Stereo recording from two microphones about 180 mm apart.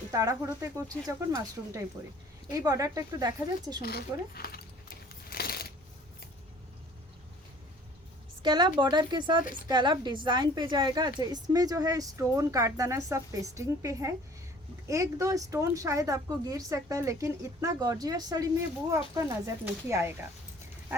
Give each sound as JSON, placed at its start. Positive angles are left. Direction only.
{"t": 0.1, "sound": "speech", "side_deg": -20}
{"t": 2.5, "sound": "speech", "side_deg": -20}
{"t": 3.8, "sound": "speech", "side_deg": 60}
{"t": 5.3, "sound": "coin", "side_deg": 60}
{"t": 8.4, "sound": "speech", "side_deg": -25}